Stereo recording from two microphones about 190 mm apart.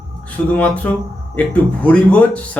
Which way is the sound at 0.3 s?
5° left (ahead or behind).